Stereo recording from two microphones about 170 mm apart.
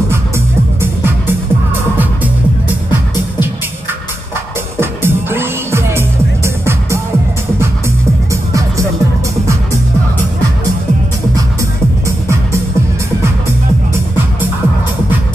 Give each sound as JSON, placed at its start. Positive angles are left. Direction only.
{"t": 4.7, "sound": "music", "side_deg": -15}
{"t": 8.3, "sound": "music", "side_deg": -20}